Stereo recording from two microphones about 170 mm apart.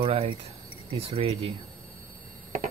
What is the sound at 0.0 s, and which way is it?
Speech, 35° right (ahead or behind).